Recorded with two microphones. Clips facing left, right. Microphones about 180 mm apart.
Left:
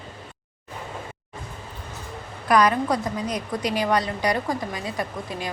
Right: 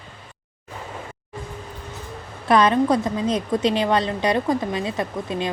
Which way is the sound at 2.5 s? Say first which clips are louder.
Right 3 dB; 25° right (ahead or behind).